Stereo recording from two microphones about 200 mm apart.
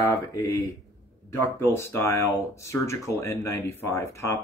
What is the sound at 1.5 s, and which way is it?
Speech, 10° left (ahead or behind).